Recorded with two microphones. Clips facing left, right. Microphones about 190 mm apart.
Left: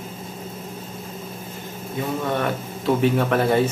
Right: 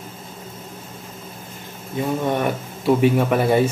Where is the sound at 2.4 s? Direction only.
10° right (ahead or behind).